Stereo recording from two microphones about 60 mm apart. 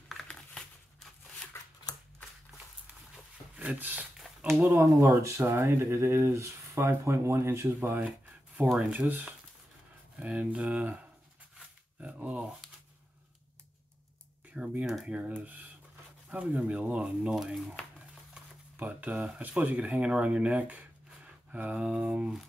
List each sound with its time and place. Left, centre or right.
1.5 s shuffling cards: left
3.5 s speech: right
4.2 s a sound: centre
4.6 s speech: right
8.7 s speech: centre
10.1 s speech: right
12.0 s a sound: right
14.5 s speech: centre
15.2 s speech: right
17.3 s speech: centre
17.9 s a sound: right
19.2 s speech: centre